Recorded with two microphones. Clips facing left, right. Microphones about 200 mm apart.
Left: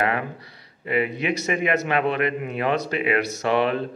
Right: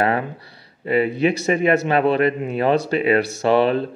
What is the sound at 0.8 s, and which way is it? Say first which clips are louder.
Speech: right 6 dB; 35° right (ahead or behind).